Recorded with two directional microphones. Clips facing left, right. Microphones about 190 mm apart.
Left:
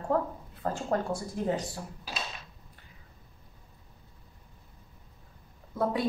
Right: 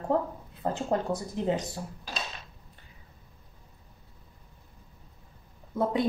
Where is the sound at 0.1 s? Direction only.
20° right (ahead or behind).